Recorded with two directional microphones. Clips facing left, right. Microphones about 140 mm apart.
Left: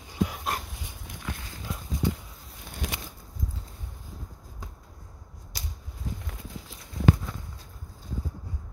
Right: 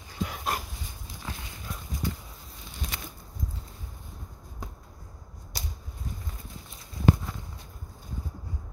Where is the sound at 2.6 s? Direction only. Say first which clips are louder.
Left 4 dB; 60° left (ahead or behind).